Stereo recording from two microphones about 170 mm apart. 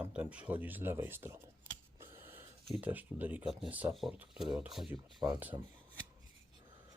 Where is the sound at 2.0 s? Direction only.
15° right (ahead or behind).